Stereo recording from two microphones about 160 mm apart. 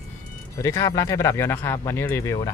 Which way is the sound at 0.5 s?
20° left (ahead or behind).